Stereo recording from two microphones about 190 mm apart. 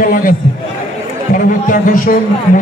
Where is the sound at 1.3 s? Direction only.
45° left (ahead or behind).